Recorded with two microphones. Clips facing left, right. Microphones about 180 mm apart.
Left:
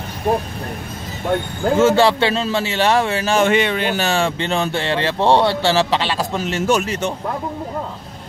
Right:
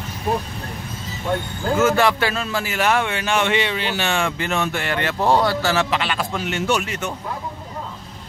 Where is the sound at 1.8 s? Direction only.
30° left (ahead or behind).